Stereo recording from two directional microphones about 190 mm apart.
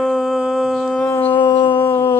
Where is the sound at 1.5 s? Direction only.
25° left (ahead or behind).